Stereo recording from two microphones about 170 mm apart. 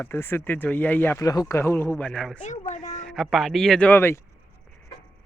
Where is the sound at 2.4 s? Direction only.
45° left (ahead or behind).